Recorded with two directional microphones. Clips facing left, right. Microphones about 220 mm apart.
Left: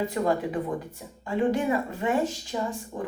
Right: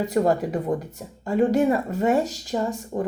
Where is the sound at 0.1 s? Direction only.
40° right (ahead or behind).